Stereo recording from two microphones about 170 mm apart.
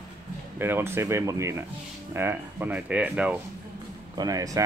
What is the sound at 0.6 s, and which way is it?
Speech, 15° right (ahead or behind).